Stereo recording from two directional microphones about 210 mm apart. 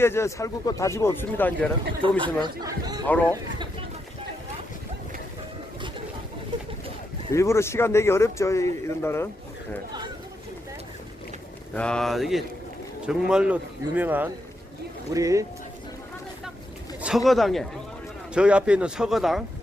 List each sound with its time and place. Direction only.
0.0 s a man's voice: 10° left (ahead or behind)
2.0 s speech: 20° right (ahead or behind)
3.1 s a man's voice: 10° left (ahead or behind)
7.3 s a man's voice: 15° left (ahead or behind)
11.7 s a man's voice: 5° left (ahead or behind); by 15.4 s 15° right (ahead or behind)
17.2 s speech: centre (ahead or behind)